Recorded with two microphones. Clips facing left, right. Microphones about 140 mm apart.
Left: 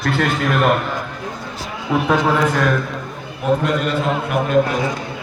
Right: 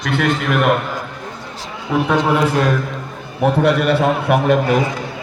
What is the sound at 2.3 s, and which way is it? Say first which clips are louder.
Speech: right 2 dB; 20° right (ahead or behind).